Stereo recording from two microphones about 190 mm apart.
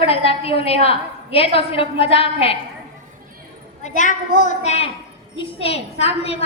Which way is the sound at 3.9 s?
40° left (ahead or behind).